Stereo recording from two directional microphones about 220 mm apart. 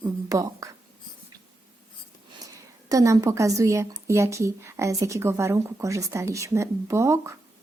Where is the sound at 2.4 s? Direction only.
15° right (ahead or behind).